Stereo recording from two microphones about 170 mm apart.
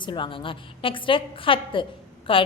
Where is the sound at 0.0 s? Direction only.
30° left (ahead or behind).